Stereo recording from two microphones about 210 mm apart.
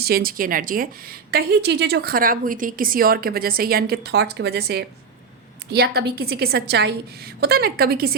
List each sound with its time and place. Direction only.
0.0 s a woman's voice: 45° right (ahead or behind)